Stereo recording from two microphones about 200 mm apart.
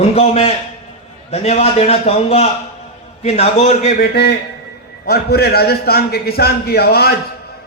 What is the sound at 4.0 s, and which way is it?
A man's voice, 55° left (ahead or behind).